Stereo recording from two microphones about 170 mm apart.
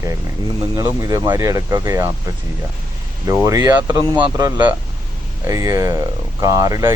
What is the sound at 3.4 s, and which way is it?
Speech, 20° right (ahead or behind).